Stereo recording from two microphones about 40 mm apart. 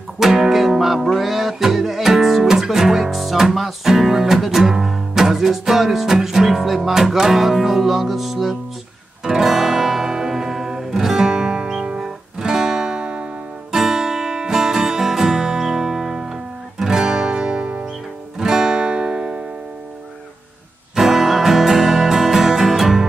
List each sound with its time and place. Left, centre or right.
0.2 s music: centre
16.7 s guitar: centre
18.4 s music: centre
20.9 s music: centre